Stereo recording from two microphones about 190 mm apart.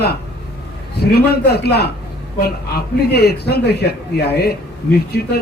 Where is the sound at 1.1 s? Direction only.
55° left (ahead or behind).